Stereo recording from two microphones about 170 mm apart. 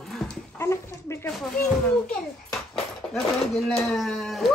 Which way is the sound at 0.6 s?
15° left (ahead or behind).